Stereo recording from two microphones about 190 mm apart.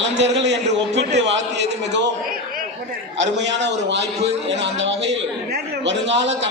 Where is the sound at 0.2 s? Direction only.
65° right (ahead or behind).